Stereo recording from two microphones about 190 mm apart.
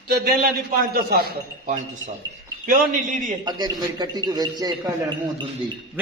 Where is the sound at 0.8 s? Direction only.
50° right (ahead or behind).